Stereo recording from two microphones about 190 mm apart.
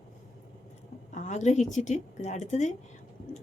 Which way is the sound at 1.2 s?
40° left (ahead or behind).